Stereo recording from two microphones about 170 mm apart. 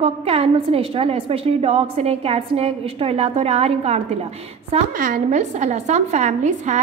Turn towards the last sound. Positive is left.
turn(degrees=-45)  # may be behind; listen again after turning